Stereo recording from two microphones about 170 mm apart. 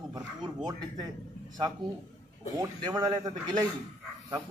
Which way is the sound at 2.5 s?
20° right (ahead or behind).